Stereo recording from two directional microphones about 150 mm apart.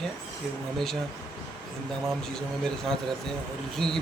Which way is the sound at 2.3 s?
5° left (ahead or behind).